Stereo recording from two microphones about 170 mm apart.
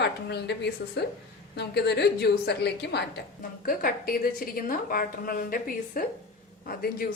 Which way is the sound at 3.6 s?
55° left (ahead or behind).